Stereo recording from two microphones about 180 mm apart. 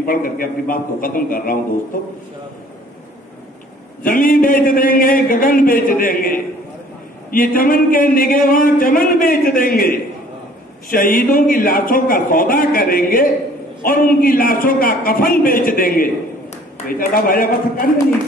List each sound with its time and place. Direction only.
0.0 s a man's voice: 50° left (ahead or behind)
4.0 s a man's voice: 50° left (ahead or behind)